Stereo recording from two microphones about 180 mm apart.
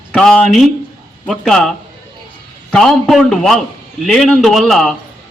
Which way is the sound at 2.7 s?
Centre (ahead or behind).